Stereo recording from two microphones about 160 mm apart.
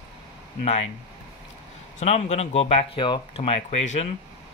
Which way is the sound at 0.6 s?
40° left (ahead or behind).